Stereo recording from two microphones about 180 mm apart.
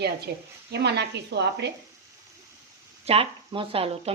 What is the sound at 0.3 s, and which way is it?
A woman's voice, 60° right (ahead or behind).